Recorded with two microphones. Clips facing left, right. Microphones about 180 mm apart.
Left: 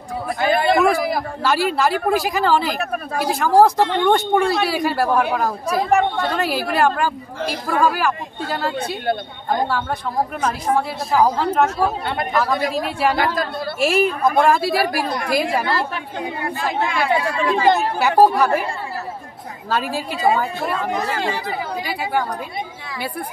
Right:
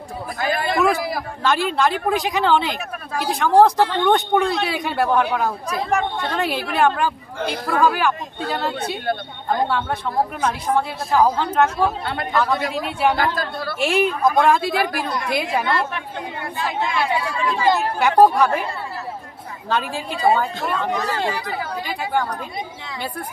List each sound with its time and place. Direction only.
0.4 s a sound: 20° left (ahead or behind)
1.4 s speech: 5° left (ahead or behind)
2.8 s speech: 60° left (ahead or behind)
3.3 s speech: centre (ahead or behind)
10.4 s speech: centre (ahead or behind)
16.4 s speech: 75° left (ahead or behind)
17.5 s speech: 50° left (ahead or behind)
17.9 s speech: 5° left (ahead or behind)
19.7 s speech: 5° left (ahead or behind)